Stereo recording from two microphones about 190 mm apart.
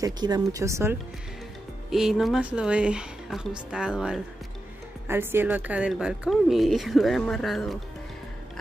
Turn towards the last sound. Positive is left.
turn(degrees=0)  # may be behind; listen again after turning